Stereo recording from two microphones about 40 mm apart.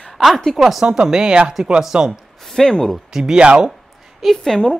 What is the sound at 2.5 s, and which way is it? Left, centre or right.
Speech, centre.